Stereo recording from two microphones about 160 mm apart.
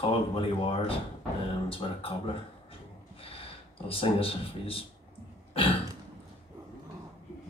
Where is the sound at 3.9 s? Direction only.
35° left (ahead or behind).